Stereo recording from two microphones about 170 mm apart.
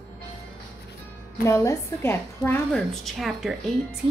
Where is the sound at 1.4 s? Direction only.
15° left (ahead or behind).